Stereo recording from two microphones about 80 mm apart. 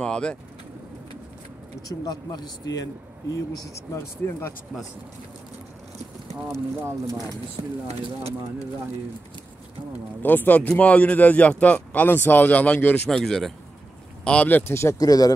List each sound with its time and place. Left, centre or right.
0.0 s speech: centre
2.0 s a man's voice: left
6.4 s speech: right
10.2 s a man's voice: left
13.1 s speech: centre
14.5 s speech: left
15.0 s speech: left